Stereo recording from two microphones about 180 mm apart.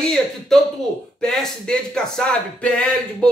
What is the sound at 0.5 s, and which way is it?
Speech, centre (ahead or behind).